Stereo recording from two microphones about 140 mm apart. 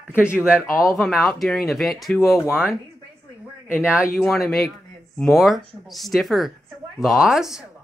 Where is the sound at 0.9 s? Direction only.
Centre (ahead or behind).